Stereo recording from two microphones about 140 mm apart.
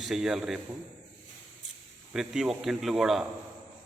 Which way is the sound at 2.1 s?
5° right (ahead or behind).